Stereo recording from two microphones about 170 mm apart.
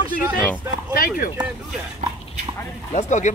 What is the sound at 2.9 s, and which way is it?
Speech, 45° left (ahead or behind).